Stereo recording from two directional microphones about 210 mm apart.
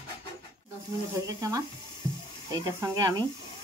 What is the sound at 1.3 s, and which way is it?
Stir, 15° right (ahead or behind).